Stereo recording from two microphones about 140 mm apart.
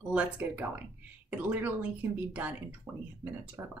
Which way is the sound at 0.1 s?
10° right (ahead or behind).